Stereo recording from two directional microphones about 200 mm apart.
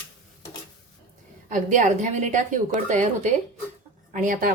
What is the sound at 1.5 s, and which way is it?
A woman's voice, 40° right (ahead or behind).